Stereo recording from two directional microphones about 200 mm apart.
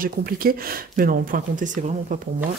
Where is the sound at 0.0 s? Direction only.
45° right (ahead or behind).